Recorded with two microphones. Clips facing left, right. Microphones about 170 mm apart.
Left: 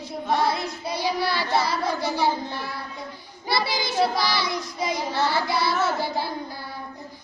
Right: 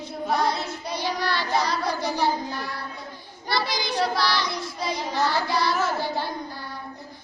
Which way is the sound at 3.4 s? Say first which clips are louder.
Left 1 dB; 10° left (ahead or behind).